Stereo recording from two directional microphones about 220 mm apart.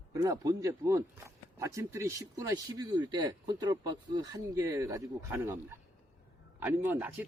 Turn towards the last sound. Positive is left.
turn(degrees=-10)  # may be behind; listen again after turning